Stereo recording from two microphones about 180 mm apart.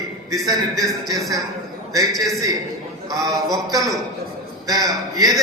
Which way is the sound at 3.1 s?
20° right (ahead or behind).